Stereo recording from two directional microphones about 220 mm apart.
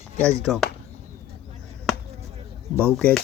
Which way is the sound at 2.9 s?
Centre (ahead or behind).